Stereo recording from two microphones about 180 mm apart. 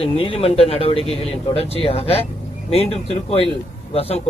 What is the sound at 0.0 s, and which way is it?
Speech, 30° left (ahead or behind).